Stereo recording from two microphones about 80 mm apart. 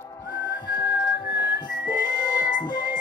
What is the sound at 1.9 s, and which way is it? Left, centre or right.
Music, left.